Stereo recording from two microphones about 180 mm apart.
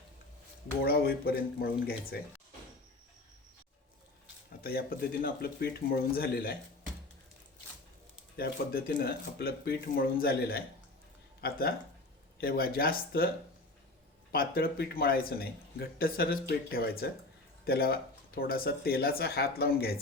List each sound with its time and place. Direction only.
0.9 s speech: 60° left (ahead or behind)
4.6 s speech: 55° left (ahead or behind)
8.4 s speech: 55° left (ahead or behind)
14.3 s speech: 55° left (ahead or behind)